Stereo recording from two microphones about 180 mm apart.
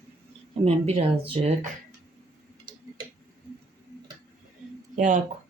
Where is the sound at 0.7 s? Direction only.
35° right (ahead or behind).